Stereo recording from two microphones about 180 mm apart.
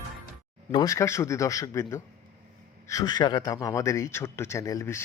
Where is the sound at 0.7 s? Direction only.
20° left (ahead or behind).